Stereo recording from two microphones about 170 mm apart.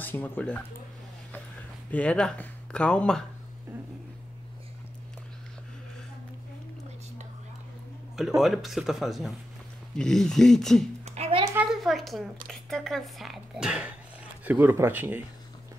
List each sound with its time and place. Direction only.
0.0 s speech: 10° left (ahead or behind)
1.9 s speech: 10° left (ahead or behind)
8.4 s speech: centre (ahead or behind)
11.1 s music: 35° right (ahead or behind)
11.6 s a woman's voice: centre (ahead or behind)